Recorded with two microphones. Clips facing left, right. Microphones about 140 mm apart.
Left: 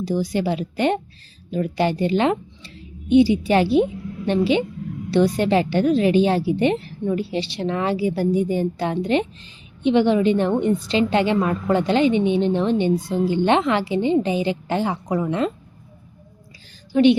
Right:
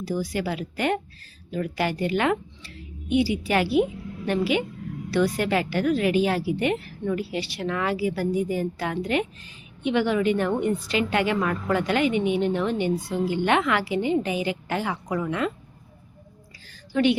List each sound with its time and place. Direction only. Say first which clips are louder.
0.0 s a woman's voice: left 5 dB; 25° left (ahead or behind)
16.9 s speech: left 6 dB; 20° left (ahead or behind)